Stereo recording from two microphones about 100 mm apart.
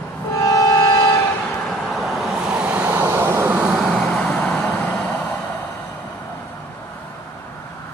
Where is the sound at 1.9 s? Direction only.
Centre (ahead or behind); by 3.6 s 25° right (ahead or behind).